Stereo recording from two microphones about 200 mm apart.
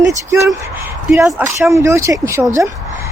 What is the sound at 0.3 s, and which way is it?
Speech, 15° right (ahead or behind).